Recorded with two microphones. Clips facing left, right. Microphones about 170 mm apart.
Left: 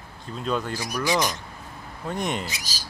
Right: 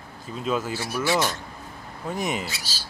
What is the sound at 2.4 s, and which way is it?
Speech, 15° left (ahead or behind).